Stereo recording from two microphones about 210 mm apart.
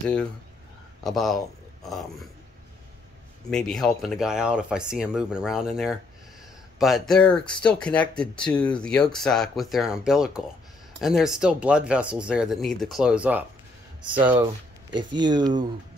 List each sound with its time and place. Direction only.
1.0 s speech: centre (ahead or behind)
3.4 s speech: centre (ahead or behind)
14.9 s speech: 20° right (ahead or behind)